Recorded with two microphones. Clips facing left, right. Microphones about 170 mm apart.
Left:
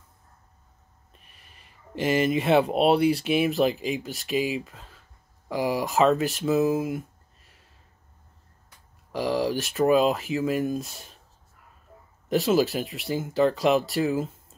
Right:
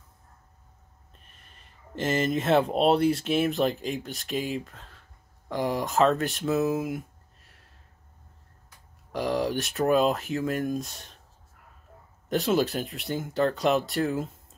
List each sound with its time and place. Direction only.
1.1 s speech: 5° left (ahead or behind)
9.1 s speech: centre (ahead or behind)
12.3 s speech: 5° left (ahead or behind)